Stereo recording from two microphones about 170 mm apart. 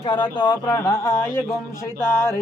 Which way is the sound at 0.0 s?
30° left (ahead or behind).